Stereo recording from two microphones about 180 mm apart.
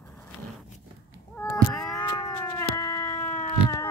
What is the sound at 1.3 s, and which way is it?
Cat, 15° left (ahead or behind).